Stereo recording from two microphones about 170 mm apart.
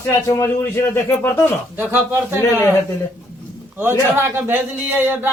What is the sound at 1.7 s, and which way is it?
Speech, 10° right (ahead or behind).